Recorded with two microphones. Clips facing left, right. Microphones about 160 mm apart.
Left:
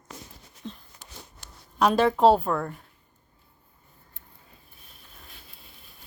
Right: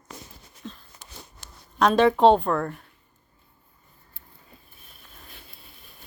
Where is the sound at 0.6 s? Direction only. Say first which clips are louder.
Left 1 dB; 20° left (ahead or behind).